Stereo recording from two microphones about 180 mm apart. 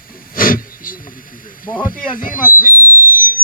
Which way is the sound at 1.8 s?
50° left (ahead or behind).